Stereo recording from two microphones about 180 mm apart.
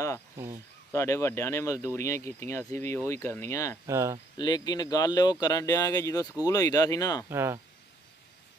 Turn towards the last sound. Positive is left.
turn(degrees=-15)  # may be behind; listen again after turning